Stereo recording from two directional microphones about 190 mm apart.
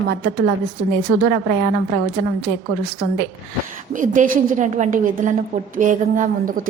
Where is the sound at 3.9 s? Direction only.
45° right (ahead or behind).